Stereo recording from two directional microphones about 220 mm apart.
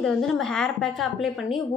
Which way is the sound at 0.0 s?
Centre (ahead or behind).